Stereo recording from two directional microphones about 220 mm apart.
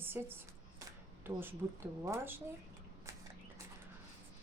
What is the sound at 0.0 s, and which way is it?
A woman's voice, 10° right (ahead or behind).